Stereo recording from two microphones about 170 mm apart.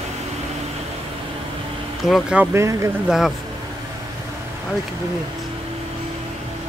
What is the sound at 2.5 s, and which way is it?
Speech, 15° right (ahead or behind).